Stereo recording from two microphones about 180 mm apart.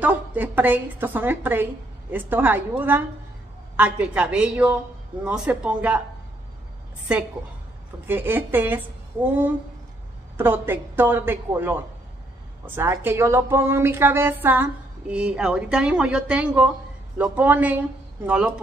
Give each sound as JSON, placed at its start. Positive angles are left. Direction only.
{"t": 0.0, "sound": "a woman's voice", "side_deg": -10}
{"t": 7.1, "sound": "a woman's voice", "side_deg": -5}